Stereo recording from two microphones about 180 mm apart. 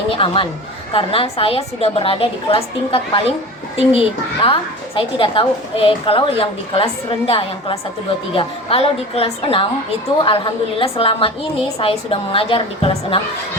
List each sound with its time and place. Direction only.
0.1 s a woman's voice: 30° left (ahead or behind)
4.4 s a woman's voice: 30° left (ahead or behind)